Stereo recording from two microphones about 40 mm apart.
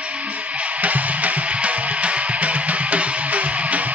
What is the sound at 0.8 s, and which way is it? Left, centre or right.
Music, right.